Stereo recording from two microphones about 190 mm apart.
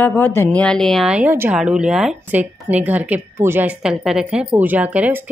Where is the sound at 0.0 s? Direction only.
10° left (ahead or behind).